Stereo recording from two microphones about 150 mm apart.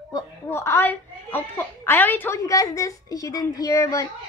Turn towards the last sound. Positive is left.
turn(degrees=20)  # may be behind; listen again after turning